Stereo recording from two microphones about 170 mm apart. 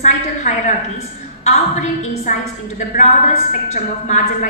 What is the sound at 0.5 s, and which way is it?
A woman's voice, 50° left (ahead or behind).